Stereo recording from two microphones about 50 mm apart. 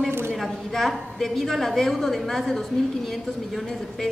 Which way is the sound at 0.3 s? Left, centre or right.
Centre.